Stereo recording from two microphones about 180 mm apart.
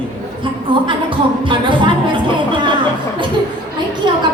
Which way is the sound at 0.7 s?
30° right (ahead or behind).